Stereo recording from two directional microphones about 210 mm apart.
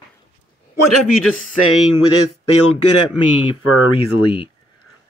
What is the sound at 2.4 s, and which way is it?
Speech, 90° left.